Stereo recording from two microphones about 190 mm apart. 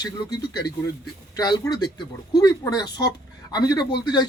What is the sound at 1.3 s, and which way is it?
Speech, 20° left (ahead or behind).